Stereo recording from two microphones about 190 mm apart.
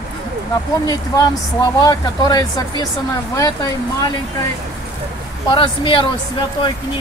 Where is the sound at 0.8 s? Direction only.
20° left (ahead or behind).